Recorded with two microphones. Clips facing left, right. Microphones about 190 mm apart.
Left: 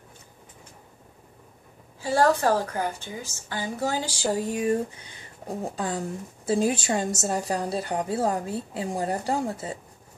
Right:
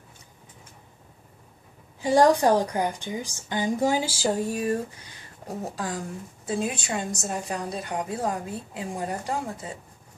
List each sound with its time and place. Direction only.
2.0 s a woman's voice: 15° right (ahead or behind)
4.5 s speech: 20° left (ahead or behind)
5.8 s a woman's voice: 30° left (ahead or behind)